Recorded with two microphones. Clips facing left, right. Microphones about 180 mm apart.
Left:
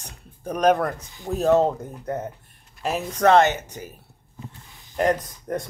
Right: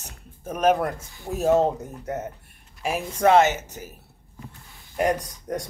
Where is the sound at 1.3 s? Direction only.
10° right (ahead or behind).